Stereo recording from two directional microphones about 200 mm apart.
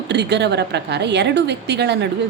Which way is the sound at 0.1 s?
60° right (ahead or behind).